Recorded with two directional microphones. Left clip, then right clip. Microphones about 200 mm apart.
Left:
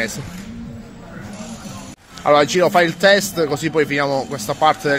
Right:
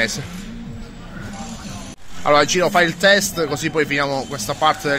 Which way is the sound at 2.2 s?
10° left (ahead or behind).